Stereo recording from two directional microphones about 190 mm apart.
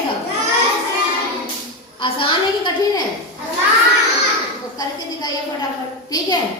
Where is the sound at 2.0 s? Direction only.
25° left (ahead or behind).